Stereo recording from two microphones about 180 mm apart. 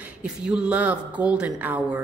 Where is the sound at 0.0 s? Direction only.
5° right (ahead or behind).